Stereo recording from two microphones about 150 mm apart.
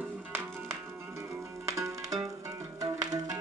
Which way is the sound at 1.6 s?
20° right (ahead or behind).